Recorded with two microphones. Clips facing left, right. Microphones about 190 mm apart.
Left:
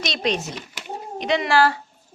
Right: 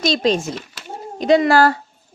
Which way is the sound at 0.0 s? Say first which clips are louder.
Right 7 dB; 30° right (ahead or behind).